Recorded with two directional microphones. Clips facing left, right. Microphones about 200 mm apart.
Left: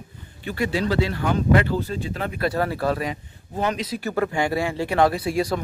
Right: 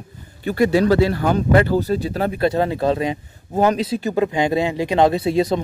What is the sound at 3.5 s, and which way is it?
Speech, 40° right (ahead or behind).